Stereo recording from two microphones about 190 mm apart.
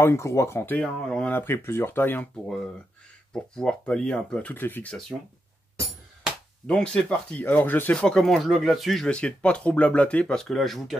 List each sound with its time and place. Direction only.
0.0 s speech: 15° left (ahead or behind)
3.5 s speech: 5° left (ahead or behind)
6.2 s speech: 5° left (ahead or behind)